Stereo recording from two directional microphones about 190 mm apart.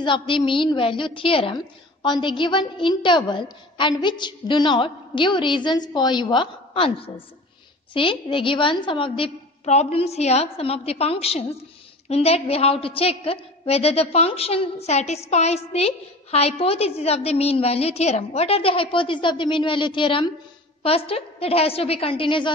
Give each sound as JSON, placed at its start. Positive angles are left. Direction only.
{"t": 0.0, "sound": "a woman's voice", "side_deg": 25}